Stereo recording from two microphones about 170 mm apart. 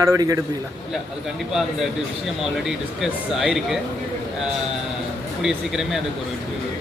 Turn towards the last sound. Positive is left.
turn(degrees=0)  # may be behind; listen again after turning